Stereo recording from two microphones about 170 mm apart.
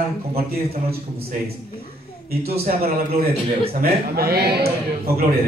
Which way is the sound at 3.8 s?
65° right (ahead or behind).